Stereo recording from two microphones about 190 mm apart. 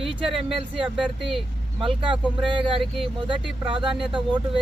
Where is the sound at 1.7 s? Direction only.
25° right (ahead or behind).